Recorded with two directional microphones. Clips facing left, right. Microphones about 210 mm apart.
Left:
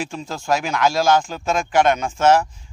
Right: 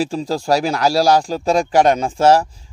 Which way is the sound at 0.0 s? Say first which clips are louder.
Right 8 dB; 35° right (ahead or behind).